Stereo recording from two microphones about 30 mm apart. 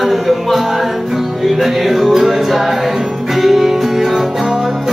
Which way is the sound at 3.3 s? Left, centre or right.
Centre.